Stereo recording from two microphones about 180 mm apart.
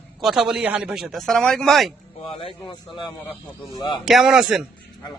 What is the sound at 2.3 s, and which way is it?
Speech, 30° left (ahead or behind).